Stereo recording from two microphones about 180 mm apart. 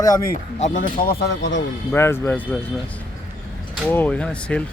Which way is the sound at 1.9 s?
15° left (ahead or behind).